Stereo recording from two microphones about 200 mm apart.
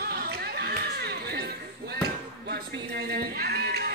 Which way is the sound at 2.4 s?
50° right (ahead or behind).